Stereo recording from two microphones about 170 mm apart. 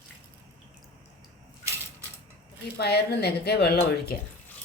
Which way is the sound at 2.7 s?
70° left (ahead or behind).